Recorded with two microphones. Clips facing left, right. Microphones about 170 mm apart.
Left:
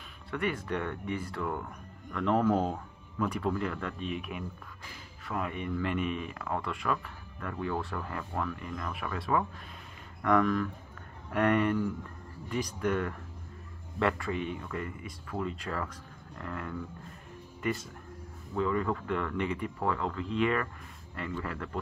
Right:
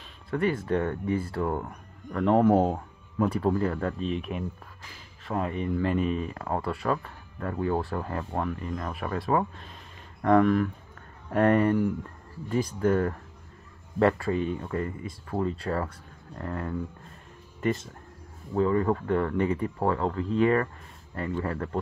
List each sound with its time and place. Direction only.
0.3 s speech: 30° right (ahead or behind)
18.5 s speech: 35° right (ahead or behind)